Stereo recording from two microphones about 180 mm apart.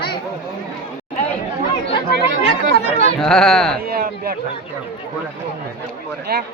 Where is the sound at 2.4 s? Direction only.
35° left (ahead or behind).